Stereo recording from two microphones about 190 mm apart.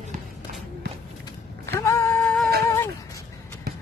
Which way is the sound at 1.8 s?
15° left (ahead or behind).